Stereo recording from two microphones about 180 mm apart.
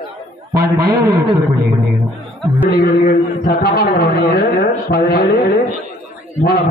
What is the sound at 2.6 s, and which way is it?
A man's voice, 60° left (ahead or behind).